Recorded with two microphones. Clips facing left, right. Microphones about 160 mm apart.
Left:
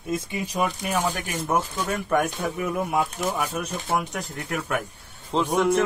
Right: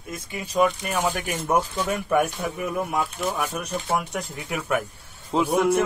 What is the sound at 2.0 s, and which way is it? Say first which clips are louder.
Speech: even; 5° right (ahead or behind).